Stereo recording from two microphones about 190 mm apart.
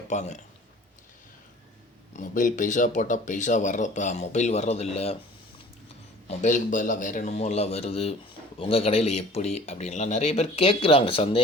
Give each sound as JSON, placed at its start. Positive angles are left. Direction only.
{"t": 0.1, "sound": "speech", "side_deg": 40}
{"t": 2.1, "sound": "speech", "side_deg": 45}
{"t": 6.2, "sound": "speech", "side_deg": 40}